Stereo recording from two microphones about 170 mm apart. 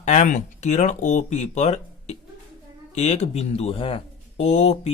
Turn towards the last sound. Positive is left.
turn(degrees=40)  # may be behind; listen again after turning